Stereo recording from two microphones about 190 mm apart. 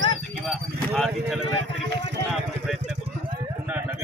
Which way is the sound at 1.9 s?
70° right (ahead or behind).